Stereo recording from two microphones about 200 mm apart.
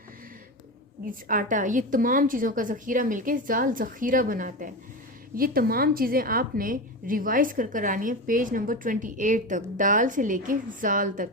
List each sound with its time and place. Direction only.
1.3 s a woman's voice: 40° right (ahead or behind)